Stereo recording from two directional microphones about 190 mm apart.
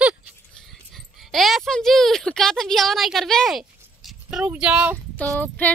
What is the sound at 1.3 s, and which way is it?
Speech, centre (ahead or behind).